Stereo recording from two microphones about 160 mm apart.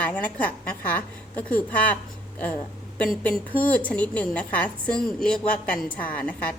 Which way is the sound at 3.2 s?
10° left (ahead or behind).